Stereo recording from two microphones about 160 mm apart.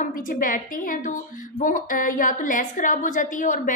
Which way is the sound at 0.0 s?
55° left (ahead or behind).